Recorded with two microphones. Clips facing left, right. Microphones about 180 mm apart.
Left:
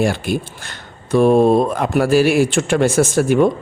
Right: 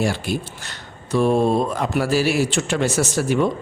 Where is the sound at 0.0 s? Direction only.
55° left (ahead or behind).